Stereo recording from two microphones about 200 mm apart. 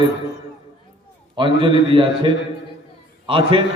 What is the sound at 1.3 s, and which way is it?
A man's voice, 25° right (ahead or behind).